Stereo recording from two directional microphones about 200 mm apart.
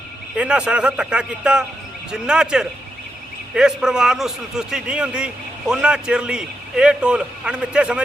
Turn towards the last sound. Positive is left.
turn(degrees=-5)  # may be behind; listen again after turning